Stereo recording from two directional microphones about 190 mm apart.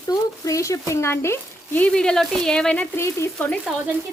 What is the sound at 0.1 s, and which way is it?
Speech, 15° left (ahead or behind).